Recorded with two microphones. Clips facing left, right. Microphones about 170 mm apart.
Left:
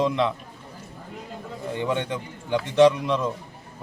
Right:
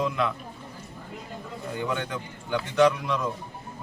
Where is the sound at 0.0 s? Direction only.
25° left (ahead or behind).